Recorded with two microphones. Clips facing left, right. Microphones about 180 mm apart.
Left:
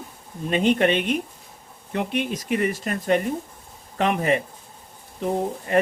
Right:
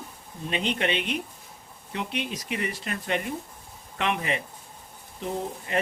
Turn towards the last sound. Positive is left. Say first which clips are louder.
# left 7 dB
turn(degrees=50)  # may be behind; listen again after turning